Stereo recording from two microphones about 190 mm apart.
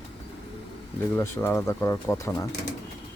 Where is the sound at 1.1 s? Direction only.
15° left (ahead or behind).